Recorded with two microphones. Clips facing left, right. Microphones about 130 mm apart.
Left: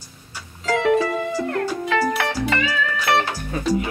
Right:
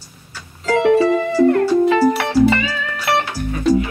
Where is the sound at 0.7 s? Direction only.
20° right (ahead or behind).